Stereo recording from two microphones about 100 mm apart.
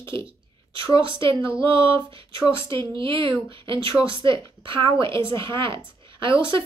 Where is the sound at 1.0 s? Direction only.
55° right (ahead or behind).